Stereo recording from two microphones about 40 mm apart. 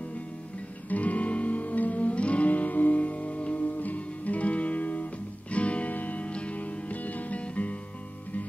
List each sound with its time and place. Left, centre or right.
0.8 s music: left